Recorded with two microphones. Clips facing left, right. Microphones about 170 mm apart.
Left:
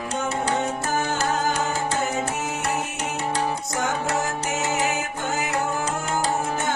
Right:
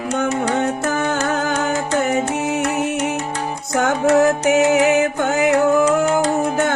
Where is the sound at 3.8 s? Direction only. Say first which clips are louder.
Right 12 dB; 70° right (ahead or behind).